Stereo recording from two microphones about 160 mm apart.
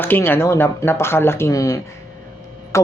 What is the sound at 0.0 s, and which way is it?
Speech, 15° left (ahead or behind).